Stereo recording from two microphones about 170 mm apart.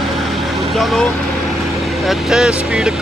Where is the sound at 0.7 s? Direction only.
Centre (ahead or behind).